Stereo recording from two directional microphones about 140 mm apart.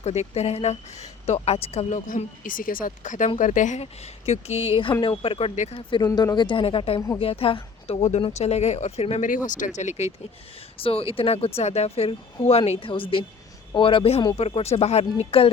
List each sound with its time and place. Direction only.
0.0 s speech: 50° left (ahead or behind)
2.0 s speech: 75° left (ahead or behind); by 9.2 s 50° left (ahead or behind)
9.2 s speech: 70° left (ahead or behind)
10.8 s speech: 40° left (ahead or behind)